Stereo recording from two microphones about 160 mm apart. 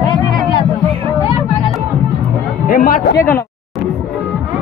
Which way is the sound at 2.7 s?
65° left (ahead or behind).